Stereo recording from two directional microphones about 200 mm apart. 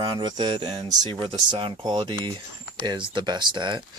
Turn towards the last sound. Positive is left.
turn(degrees=-25)  # may be behind; listen again after turning